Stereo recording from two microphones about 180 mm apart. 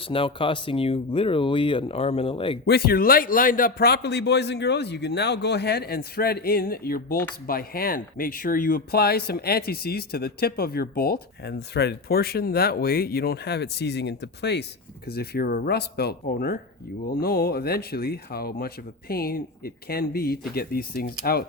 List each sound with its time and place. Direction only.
0.0 s speech: 30° left (ahead or behind)
2.6 s speech: 60° left (ahead or behind)